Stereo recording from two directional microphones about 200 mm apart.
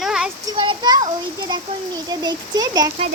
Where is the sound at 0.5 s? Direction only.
25° right (ahead or behind).